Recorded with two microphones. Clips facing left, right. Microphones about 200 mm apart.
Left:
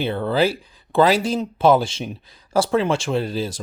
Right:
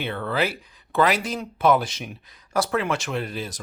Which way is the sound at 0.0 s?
30° left (ahead or behind).